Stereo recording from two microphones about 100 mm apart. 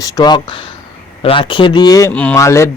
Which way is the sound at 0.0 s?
40° left (ahead or behind).